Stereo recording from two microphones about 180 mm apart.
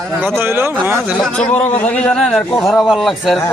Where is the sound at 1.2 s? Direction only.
10° left (ahead or behind).